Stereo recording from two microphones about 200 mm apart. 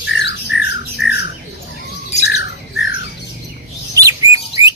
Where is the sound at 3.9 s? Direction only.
15° right (ahead or behind).